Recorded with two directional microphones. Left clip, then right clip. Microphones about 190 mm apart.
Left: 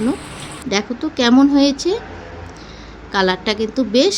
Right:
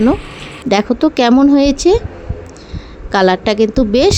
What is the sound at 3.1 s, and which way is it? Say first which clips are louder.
Speech: right 6 dB; 35° right (ahead or behind).